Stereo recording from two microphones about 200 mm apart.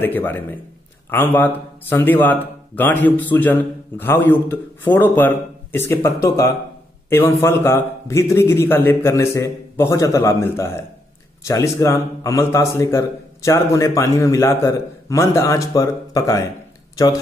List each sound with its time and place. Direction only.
0.0 s a man's voice: 10° left (ahead or behind)